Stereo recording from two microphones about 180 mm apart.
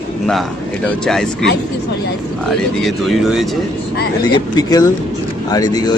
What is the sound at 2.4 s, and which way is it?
Speech, centre (ahead or behind).